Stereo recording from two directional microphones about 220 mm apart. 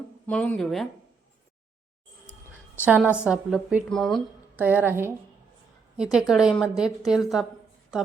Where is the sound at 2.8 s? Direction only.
5° right (ahead or behind).